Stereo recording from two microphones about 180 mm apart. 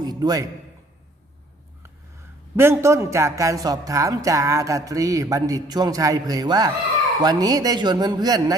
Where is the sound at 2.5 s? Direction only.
15° right (ahead or behind).